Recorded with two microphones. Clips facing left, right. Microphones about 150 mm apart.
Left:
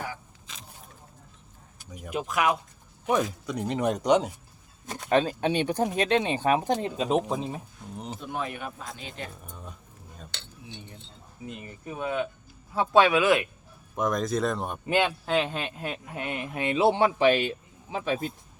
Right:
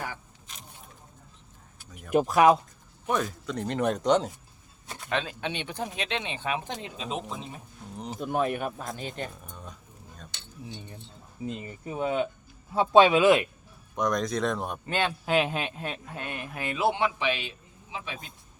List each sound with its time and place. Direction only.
2.1 s speech: 35° right (ahead or behind)
3.1 s speech: 10° left (ahead or behind)
4.9 s speech: 40° left (ahead or behind)
7.9 s speech: centre (ahead or behind)
8.3 s speech: 45° right (ahead or behind)
9.4 s a sound: 5° left (ahead or behind)
11.4 s speech: 25° right (ahead or behind)
13.9 s speech: 5° left (ahead or behind)
14.8 s speech: 15° left (ahead or behind)
15.3 s speech: 5° right (ahead or behind)
16.1 s speech: 20° left (ahead or behind)
17.2 s speech: 45° left (ahead or behind)